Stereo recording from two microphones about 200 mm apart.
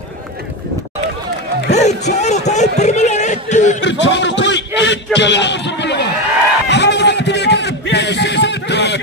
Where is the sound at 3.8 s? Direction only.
65° left (ahead or behind).